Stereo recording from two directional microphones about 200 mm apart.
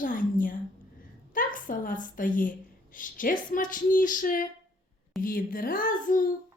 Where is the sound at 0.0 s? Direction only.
45° left (ahead or behind).